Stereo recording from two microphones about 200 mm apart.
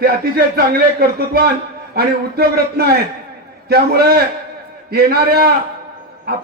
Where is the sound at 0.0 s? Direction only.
50° right (ahead or behind).